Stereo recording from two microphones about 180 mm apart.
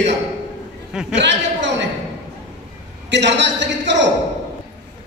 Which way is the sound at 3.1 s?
75° right (ahead or behind).